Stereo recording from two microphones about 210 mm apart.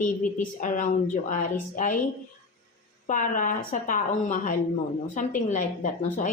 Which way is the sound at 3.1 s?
40° left (ahead or behind).